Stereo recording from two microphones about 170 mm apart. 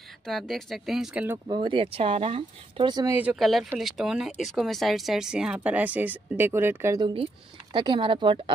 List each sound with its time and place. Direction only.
0.3 s speech: centre (ahead or behind)
1.5 s speech: 30° right (ahead or behind)
3.2 s speech: 5° right (ahead or behind)
7.7 s speech: 30° right (ahead or behind)